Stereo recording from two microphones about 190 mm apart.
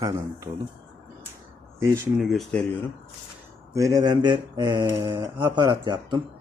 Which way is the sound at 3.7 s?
20° right (ahead or behind).